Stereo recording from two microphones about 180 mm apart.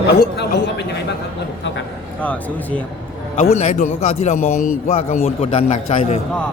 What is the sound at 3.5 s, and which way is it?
Speech, 40° left (ahead or behind).